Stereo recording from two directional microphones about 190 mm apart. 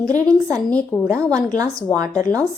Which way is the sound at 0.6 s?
5° left (ahead or behind).